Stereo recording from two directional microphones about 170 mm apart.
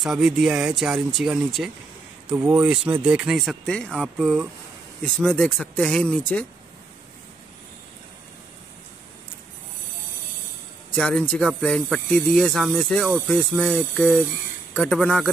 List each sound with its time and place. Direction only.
0.0 s speech: centre (ahead or behind)
11.0 s speech: 5° left (ahead or behind)